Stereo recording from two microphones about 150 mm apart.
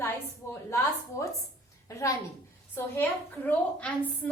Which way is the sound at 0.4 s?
20° left (ahead or behind).